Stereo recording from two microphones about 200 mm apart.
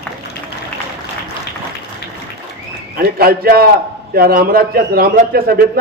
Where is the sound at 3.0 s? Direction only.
50° right (ahead or behind).